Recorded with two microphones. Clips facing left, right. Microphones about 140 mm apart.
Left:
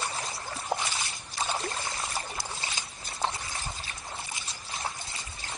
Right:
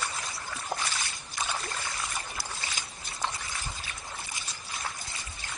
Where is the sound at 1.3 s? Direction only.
30° left (ahead or behind).